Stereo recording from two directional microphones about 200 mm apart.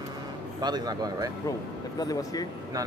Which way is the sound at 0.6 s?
20° right (ahead or behind).